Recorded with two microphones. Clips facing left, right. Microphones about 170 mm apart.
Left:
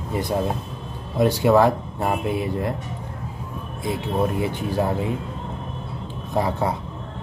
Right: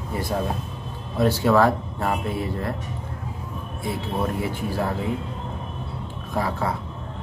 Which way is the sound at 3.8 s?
20° left (ahead or behind).